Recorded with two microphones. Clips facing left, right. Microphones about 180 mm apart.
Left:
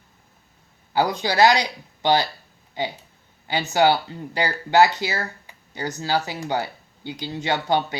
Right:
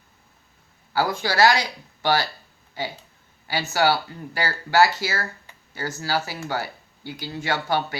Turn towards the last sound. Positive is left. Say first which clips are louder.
# left 2 dB
turn(degrees=20)  # may be behind; listen again after turning